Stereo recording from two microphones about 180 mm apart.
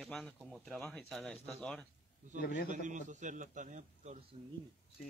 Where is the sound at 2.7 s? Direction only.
45° right (ahead or behind).